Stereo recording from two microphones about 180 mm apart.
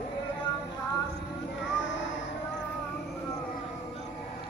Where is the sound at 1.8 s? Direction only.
90° left.